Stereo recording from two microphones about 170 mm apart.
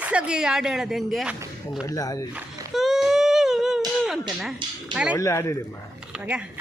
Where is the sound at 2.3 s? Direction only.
Centre (ahead or behind).